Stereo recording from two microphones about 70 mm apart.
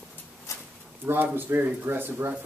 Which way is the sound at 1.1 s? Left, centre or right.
Right.